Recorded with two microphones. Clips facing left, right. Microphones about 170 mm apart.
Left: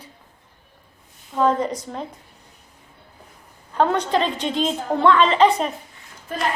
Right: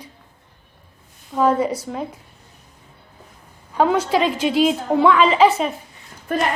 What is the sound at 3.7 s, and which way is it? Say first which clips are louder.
A woman's voice: right 2 dB; 5° right (ahead or behind).